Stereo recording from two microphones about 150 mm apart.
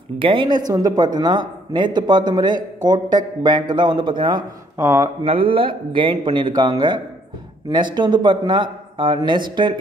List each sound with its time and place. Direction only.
0.2 s a man's voice: 35° right (ahead or behind)
4.7 s speech: 20° right (ahead or behind)
5.2 s a man's voice: 40° right (ahead or behind)